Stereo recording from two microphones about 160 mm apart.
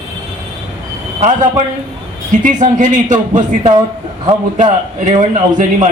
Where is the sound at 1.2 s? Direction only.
45° right (ahead or behind).